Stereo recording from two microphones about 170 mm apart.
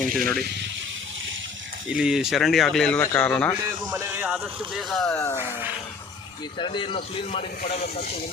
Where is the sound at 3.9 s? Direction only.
15° right (ahead or behind).